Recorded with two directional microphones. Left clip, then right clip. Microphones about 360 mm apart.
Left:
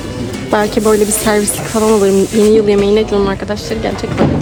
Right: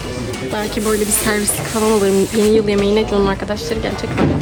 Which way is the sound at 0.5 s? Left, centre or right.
Centre.